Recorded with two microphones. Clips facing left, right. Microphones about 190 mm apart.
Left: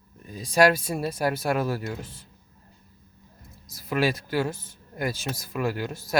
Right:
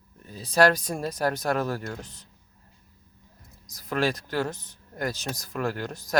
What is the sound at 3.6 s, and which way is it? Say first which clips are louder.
Speech: left 1 dB; 10° left (ahead or behind).